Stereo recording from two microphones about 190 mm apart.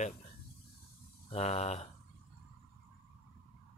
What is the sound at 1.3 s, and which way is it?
Speech, 35° left (ahead or behind).